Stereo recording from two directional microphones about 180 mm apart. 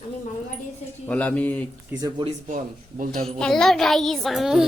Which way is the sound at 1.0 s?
10° left (ahead or behind).